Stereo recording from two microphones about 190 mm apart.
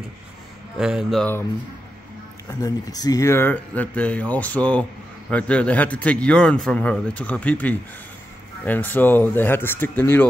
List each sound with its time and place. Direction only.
0.7 s speech: 5° right (ahead or behind)
2.6 s speech: 20° left (ahead or behind)